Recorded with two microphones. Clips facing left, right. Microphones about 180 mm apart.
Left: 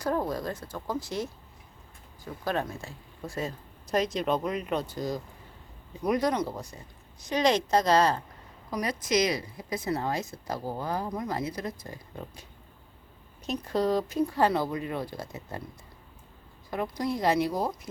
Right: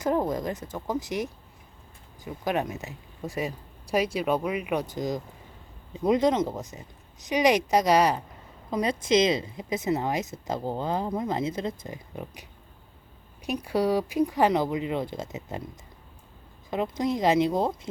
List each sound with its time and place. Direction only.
0.0 s speech: 20° right (ahead or behind)
8.7 s speech: 25° right (ahead or behind)
16.6 s speech: 20° right (ahead or behind)